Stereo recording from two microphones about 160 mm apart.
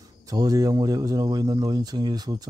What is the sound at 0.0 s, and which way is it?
Speech, 25° right (ahead or behind).